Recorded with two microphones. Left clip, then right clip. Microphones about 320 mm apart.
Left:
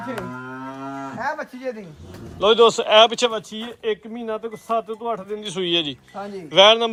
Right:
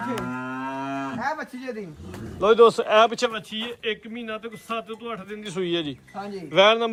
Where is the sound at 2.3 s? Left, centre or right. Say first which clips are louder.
Left 1 dB; centre.